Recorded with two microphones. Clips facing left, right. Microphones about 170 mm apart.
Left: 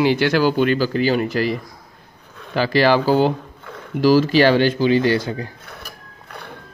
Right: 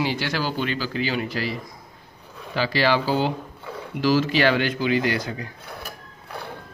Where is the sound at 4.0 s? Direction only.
40° left (ahead or behind).